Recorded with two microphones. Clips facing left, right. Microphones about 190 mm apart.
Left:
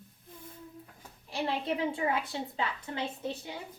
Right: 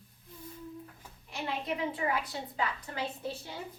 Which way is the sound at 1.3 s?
30° left (ahead or behind).